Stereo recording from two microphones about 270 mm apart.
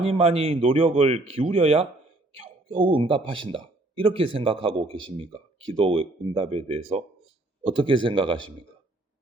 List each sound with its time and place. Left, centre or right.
0.0 s speech: right